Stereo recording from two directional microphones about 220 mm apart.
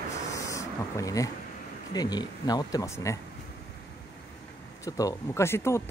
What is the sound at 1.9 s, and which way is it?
Speech, 20° left (ahead or behind).